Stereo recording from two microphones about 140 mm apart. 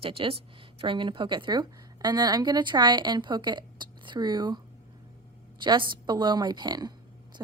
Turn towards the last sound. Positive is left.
turn(degrees=-30)  # may be behind; listen again after turning